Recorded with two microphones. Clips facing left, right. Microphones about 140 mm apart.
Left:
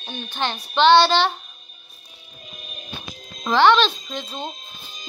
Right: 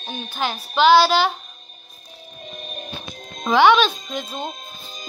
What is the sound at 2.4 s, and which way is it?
Music, 45° right (ahead or behind).